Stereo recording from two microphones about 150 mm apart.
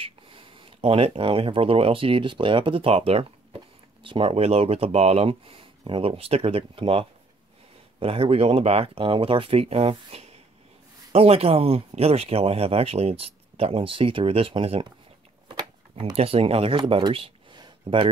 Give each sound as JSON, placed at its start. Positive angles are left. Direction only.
{"t": 0.0, "sound": "speech", "side_deg": -35}
{"t": 15.4, "sound": "a sound", "side_deg": -30}
{"t": 16.2, "sound": "speech", "side_deg": -40}